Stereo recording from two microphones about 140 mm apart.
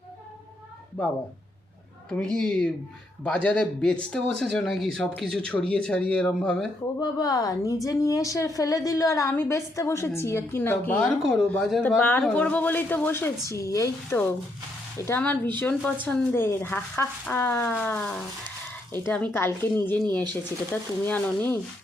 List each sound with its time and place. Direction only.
2.0 s speech: 5° left (ahead or behind)
7.0 s a woman's voice: 25° left (ahead or behind)